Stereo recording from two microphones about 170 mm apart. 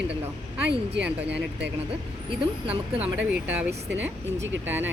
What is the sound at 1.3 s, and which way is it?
Speech, 90° right.